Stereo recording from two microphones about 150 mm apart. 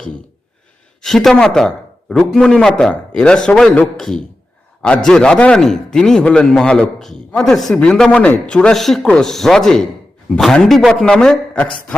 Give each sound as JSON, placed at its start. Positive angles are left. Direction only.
{"t": 1.0, "sound": "a man's voice", "side_deg": 0}